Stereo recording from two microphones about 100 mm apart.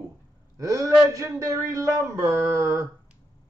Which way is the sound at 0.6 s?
35° right (ahead or behind).